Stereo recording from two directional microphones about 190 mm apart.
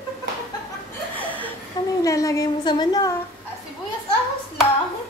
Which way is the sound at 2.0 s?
15° left (ahead or behind).